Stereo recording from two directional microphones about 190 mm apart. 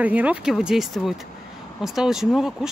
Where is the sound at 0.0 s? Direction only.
10° right (ahead or behind).